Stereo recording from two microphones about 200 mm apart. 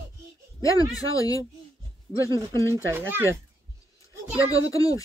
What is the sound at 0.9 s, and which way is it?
Speech, 15° left (ahead or behind).